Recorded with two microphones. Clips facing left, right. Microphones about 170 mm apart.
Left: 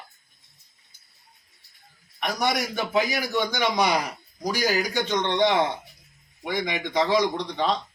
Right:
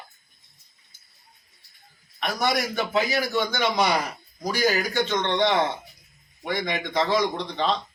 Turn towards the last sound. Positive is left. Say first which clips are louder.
# even
turn(degrees=10)  # may be behind; listen again after turning